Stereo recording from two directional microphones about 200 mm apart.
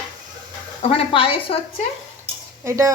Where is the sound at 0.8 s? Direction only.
30° left (ahead or behind).